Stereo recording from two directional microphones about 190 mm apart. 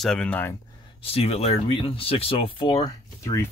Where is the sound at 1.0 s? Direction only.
30° left (ahead or behind); by 3.4 s 15° left (ahead or behind).